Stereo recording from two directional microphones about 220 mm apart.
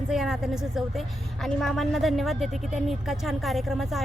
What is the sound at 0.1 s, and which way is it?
Speech, centre (ahead or behind).